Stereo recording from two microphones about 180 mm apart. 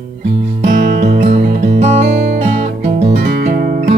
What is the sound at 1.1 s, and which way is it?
Music, 40° right (ahead or behind).